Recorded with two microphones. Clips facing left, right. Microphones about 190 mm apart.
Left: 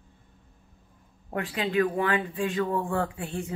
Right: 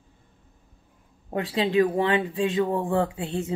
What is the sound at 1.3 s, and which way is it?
Speech, 25° right (ahead or behind).